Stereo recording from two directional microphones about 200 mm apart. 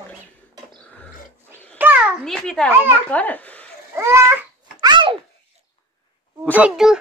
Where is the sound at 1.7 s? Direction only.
10° right (ahead or behind).